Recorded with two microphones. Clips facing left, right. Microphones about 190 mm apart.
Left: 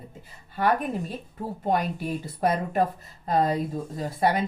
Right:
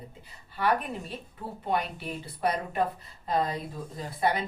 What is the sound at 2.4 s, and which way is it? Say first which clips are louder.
Speech: left 4 dB; 50° left (ahead or behind).